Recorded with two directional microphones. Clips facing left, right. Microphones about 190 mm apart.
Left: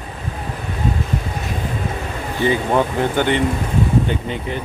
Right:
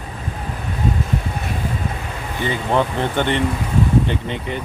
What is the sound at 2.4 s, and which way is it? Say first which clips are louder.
Speech: left 2 dB; 5° left (ahead or behind).